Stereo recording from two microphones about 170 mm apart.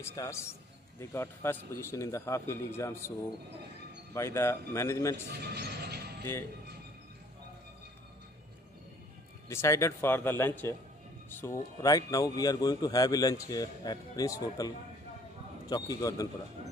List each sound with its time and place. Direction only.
0.0 s a man's voice: 20° left (ahead or behind)
4.1 s a man's voice: 15° left (ahead or behind)
5.4 s a sound: 75° right (ahead or behind)
9.5 s a man's voice: 15° left (ahead or behind)
15.7 s speech: 20° left (ahead or behind)